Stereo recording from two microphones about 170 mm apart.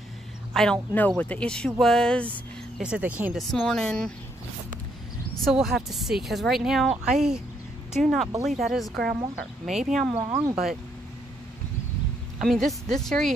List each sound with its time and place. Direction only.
0.5 s speech: 5° left (ahead or behind)
2.8 s speech: 5° right (ahead or behind)
3.3 s speech: centre (ahead or behind)
5.4 s speech: centre (ahead or behind)
10.1 s speech: 40° right (ahead or behind)
12.6 s speech: 5° left (ahead or behind)